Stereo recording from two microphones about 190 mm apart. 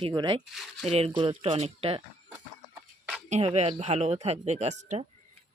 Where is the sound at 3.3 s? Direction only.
35° right (ahead or behind).